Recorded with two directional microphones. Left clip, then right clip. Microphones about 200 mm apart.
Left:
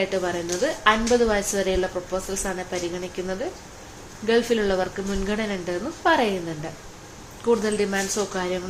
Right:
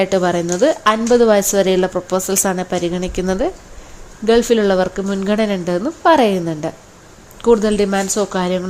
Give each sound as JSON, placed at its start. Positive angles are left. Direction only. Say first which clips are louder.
{"t": 0.0, "sound": "a woman's voice", "louder": "right 9 dB", "side_deg": -50}
{"t": 4.3, "sound": "a woman's voice", "louder": "right 8 dB", "side_deg": -40}
{"t": 7.4, "sound": "a woman's voice", "louder": "right 8 dB", "side_deg": -40}